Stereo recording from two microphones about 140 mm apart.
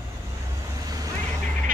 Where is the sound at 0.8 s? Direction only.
25° right (ahead or behind).